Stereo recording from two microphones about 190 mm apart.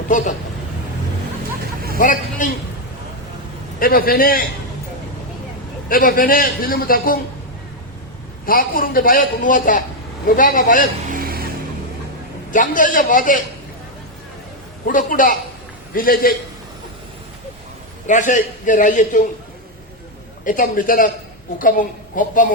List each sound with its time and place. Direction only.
0.1 s speech: 40° left (ahead or behind)
2.0 s a man's voice: 45° left (ahead or behind)
3.8 s a man's voice: 50° left (ahead or behind)
5.9 s a man's voice: 50° left (ahead or behind)
8.4 s a man's voice: 50° left (ahead or behind)
11.1 s a sound: 50° right (ahead or behind)
12.5 s a man's voice: 45° left (ahead or behind)
14.8 s a man's voice: 45° left (ahead or behind)
18.0 s a man's voice: 40° left (ahead or behind)
20.4 s a man's voice: 45° left (ahead or behind)